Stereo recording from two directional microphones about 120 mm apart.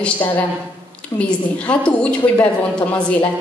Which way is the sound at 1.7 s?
10° left (ahead or behind).